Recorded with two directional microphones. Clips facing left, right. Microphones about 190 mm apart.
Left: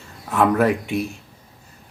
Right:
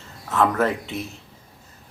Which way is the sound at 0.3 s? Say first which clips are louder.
Left 3 dB; 15° left (ahead or behind).